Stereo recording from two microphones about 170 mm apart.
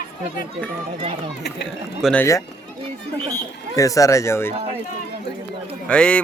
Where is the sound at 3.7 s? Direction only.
20° left (ahead or behind).